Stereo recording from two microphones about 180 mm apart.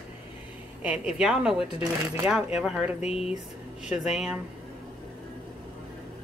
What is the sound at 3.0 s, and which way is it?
Speech, 35° left (ahead or behind).